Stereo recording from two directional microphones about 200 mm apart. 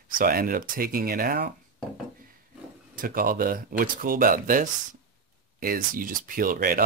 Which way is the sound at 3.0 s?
45° right (ahead or behind).